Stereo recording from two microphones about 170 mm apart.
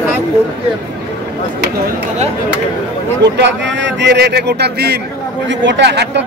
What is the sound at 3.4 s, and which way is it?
Speech, 90° right.